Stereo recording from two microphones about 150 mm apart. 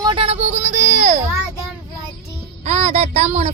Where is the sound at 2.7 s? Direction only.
45° right (ahead or behind).